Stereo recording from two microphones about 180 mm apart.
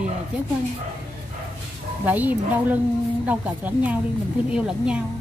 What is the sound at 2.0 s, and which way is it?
A woman's voice, 10° right (ahead or behind).